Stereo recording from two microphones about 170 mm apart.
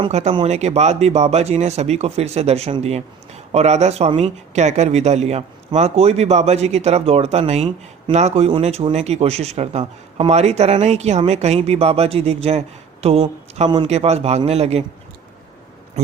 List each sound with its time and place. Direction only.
0.1 s speech: 40° right (ahead or behind)